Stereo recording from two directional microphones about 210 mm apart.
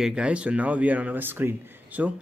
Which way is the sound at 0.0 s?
5° right (ahead or behind).